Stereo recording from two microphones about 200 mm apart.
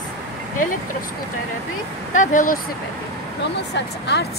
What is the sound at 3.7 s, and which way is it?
Speech, 60° left (ahead or behind).